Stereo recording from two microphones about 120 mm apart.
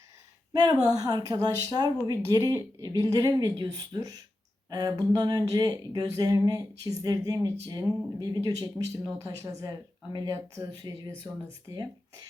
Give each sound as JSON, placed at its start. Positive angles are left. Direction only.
{"t": 0.5, "sound": "speech", "side_deg": -35}